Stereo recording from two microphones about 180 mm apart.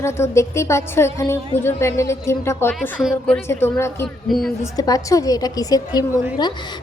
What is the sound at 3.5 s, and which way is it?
Speech, 15° left (ahead or behind).